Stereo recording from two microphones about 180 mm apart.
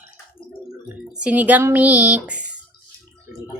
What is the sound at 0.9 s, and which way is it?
Speech, 5° right (ahead or behind).